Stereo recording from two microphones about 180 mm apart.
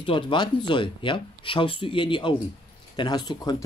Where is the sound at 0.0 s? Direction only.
30° left (ahead or behind).